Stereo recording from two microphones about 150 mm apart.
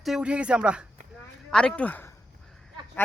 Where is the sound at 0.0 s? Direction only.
5° right (ahead or behind).